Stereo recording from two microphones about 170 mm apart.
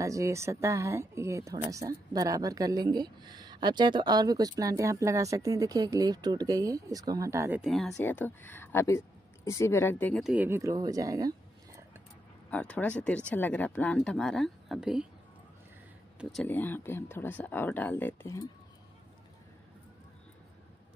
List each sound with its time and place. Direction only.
0.0 s a woman's voice: 20° right (ahead or behind)
7.6 s speech: centre (ahead or behind)
10.2 s a woman's voice: 10° right (ahead or behind)
12.4 s speech: 10° left (ahead or behind)
16.2 s speech: centre (ahead or behind)
16.4 s speech: 10° left (ahead or behind)